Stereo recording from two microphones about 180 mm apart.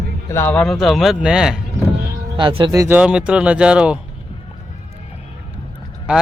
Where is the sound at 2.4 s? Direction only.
25° right (ahead or behind).